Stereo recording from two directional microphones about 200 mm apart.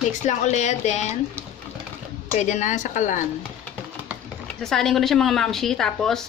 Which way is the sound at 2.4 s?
35° left (ahead or behind).